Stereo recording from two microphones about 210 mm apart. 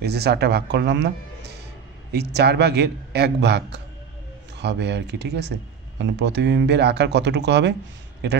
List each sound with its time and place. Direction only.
0.0 s a man's voice: 50° right (ahead or behind)